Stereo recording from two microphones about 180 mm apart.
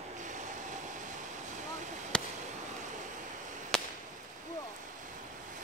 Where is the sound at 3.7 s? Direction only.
5° left (ahead or behind).